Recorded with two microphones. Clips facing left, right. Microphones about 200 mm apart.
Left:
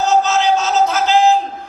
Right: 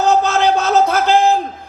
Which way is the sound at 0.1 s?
55° right (ahead or behind).